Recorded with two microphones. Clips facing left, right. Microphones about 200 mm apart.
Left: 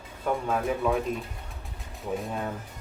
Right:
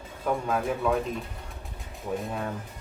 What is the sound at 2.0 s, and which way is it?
Speech, centre (ahead or behind).